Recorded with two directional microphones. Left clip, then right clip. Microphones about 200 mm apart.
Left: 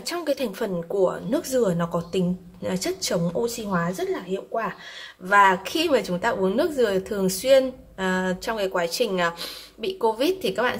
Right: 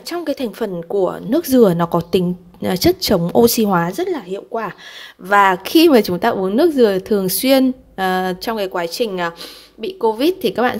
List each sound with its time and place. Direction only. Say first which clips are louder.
0.1 s a woman's voice: right 4 dB; 35° right (ahead or behind)
3.4 s a woman's voice: right 11 dB; 50° right (ahead or behind); by 10.8 s 35° right (ahead or behind)